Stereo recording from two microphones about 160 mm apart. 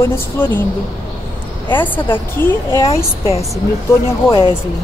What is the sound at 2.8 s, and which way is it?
Speech, 35° left (ahead or behind).